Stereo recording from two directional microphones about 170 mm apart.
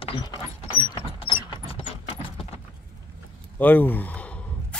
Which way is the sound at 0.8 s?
25° left (ahead or behind).